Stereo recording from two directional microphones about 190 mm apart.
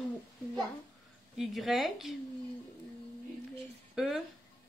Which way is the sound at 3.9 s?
Centre (ahead or behind).